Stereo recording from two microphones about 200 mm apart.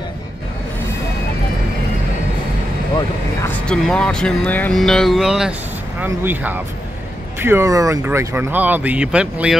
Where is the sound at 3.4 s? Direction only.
10° left (ahead or behind).